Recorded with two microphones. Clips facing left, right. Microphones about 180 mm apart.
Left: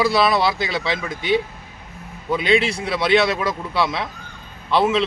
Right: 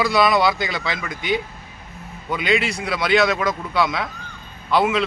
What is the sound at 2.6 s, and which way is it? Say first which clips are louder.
A man's voice: left 2 dB; 30° left (ahead or behind).